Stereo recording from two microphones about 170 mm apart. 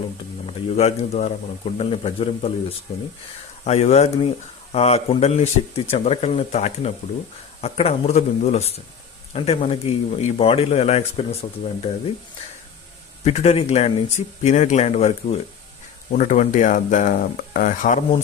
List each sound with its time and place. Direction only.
0.4 s speech: 40° left (ahead or behind)
13.2 s speech: 40° left (ahead or behind)